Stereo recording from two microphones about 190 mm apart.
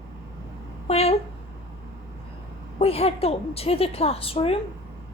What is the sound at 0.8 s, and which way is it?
Speech, 35° left (ahead or behind).